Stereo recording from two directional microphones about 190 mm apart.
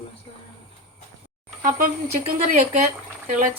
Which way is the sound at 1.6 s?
45° right (ahead or behind).